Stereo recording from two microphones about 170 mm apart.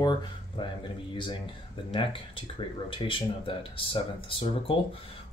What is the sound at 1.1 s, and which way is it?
Speech, 30° left (ahead or behind).